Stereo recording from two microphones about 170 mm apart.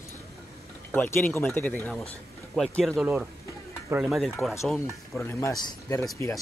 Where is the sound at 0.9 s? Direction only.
10° left (ahead or behind).